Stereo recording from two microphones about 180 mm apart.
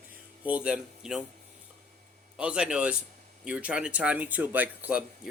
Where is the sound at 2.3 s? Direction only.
5° right (ahead or behind).